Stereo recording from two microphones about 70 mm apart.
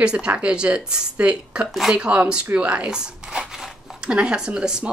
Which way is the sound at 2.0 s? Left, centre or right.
Centre.